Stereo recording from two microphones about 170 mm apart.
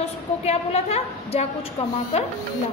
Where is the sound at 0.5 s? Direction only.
40° left (ahead or behind).